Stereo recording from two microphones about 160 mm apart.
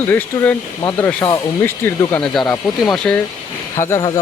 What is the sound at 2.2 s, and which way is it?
Speech, centre (ahead or behind).